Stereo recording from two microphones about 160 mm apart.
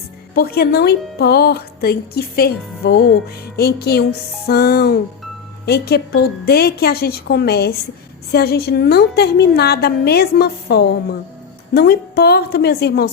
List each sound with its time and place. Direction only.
0.3 s a woman's voice: 75° left (ahead or behind)
5.6 s speech: 90° left
11.7 s a woman's voice: 75° left (ahead or behind)